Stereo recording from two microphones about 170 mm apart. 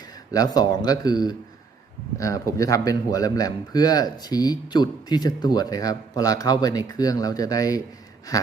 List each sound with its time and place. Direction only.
0.3 s a man's voice: 20° left (ahead or behind)